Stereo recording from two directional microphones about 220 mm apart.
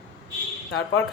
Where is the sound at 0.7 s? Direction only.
65° left (ahead or behind).